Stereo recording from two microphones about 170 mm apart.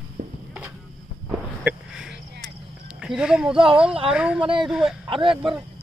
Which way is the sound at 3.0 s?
5° right (ahead or behind).